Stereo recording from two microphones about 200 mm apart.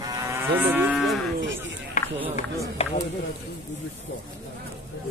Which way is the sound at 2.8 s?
30° left (ahead or behind).